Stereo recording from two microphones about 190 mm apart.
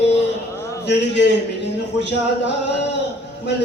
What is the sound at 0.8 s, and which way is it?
A man's voice, 65° left (ahead or behind).